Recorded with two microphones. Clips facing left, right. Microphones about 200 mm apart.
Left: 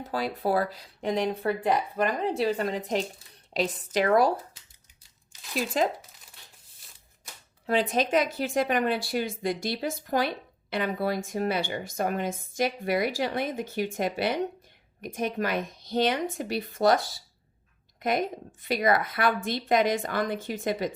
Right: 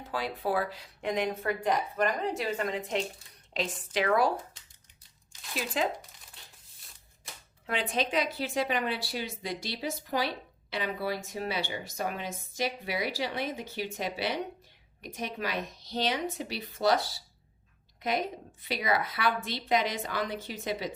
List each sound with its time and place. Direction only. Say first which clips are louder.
0.1 s a woman's voice: left 4 dB; 40° left (ahead or behind)
5.4 s a sound: left 6 dB; centre (ahead or behind)
7.7 s speech: left 6 dB; 40° left (ahead or behind)